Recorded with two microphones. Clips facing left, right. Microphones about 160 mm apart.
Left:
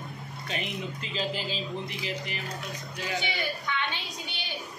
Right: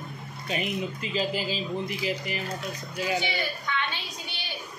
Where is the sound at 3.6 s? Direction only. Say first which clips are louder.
Right 1 dB; 20° left (ahead or behind).